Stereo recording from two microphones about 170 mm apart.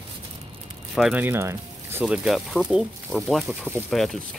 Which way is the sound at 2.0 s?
Centre (ahead or behind).